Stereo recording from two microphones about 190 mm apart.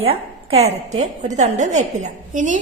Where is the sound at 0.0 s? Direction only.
30° right (ahead or behind).